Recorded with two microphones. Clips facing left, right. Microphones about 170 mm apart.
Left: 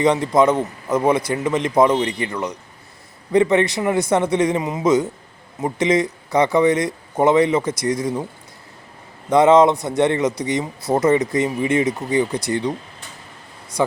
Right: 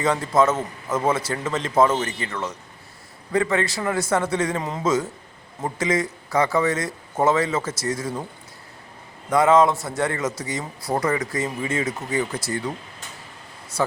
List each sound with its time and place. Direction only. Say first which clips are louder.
0.0 s a man's voice: left 4 dB; 15° left (ahead or behind)
9.3 s a man's voice: left 4 dB; 20° left (ahead or behind)